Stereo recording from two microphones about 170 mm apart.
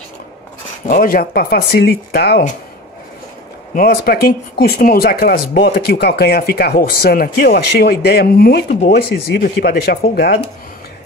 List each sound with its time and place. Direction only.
0.8 s speech: 60° left (ahead or behind)
3.7 s speech: 65° left (ahead or behind)